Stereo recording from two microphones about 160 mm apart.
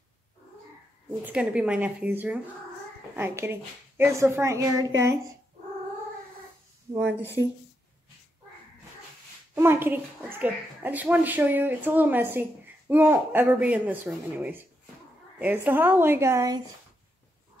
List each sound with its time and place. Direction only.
1.2 s a child's voice: 5° right (ahead or behind)
7.0 s a child's voice: 10° right (ahead or behind)
9.6 s a child's voice: 15° right (ahead or behind)